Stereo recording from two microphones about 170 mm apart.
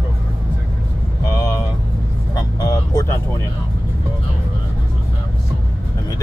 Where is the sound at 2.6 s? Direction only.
20° left (ahead or behind).